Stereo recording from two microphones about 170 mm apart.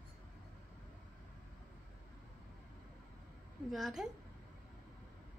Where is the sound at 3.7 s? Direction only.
Centre (ahead or behind).